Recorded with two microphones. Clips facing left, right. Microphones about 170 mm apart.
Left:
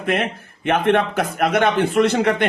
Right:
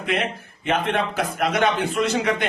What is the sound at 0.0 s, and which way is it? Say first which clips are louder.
A man's voice: left 3 dB; 50° left (ahead or behind).